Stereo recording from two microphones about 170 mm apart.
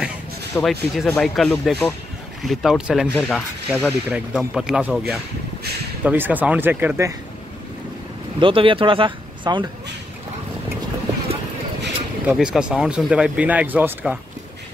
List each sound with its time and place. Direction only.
0.6 s speech: centre (ahead or behind); by 7.2 s 15° right (ahead or behind)
8.4 s speech: 30° right (ahead or behind)
12.4 s speech: 5° right (ahead or behind)